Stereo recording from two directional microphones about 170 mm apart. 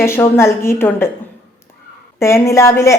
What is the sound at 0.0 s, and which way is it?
Speech, 15° left (ahead or behind).